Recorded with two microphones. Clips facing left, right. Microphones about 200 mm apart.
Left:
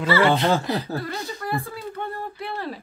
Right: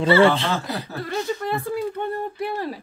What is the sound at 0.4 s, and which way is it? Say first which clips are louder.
Speech: left 4 dB; 35° left (ahead or behind).